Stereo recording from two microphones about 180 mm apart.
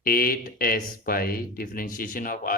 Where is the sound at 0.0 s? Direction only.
55° left (ahead or behind).